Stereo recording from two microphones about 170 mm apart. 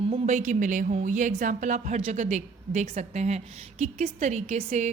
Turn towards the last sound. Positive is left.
turn(degrees=-40)  # may be behind; listen again after turning